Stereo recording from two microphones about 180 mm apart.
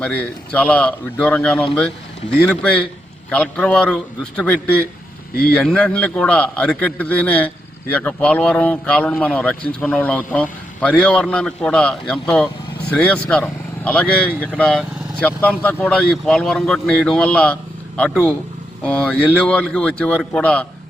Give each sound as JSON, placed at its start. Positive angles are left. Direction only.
{"t": 0.0, "sound": "a man's voice", "side_deg": 5}